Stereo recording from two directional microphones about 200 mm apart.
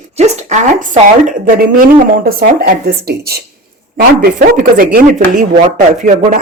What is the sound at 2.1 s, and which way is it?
A woman's voice, 50° right (ahead or behind).